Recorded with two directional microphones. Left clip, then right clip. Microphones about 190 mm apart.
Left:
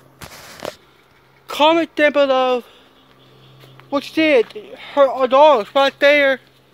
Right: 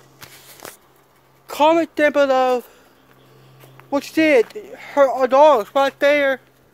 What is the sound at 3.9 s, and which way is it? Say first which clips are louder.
Speech: even; 20° right (ahead or behind).